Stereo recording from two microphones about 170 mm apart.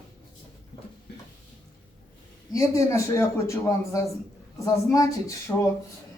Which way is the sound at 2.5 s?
15° left (ahead or behind).